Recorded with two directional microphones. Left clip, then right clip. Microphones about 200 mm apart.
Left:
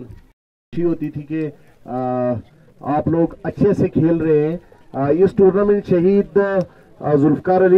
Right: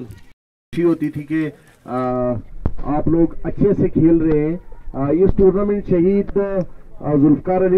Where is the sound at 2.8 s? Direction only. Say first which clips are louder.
Even; 60° left (ahead or behind).